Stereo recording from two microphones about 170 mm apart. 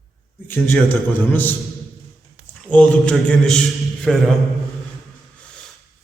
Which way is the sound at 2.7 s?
5° left (ahead or behind).